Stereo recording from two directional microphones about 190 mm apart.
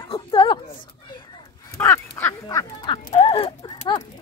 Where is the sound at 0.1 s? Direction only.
25° left (ahead or behind).